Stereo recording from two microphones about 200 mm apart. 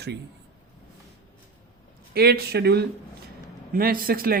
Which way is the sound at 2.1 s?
50° right (ahead or behind).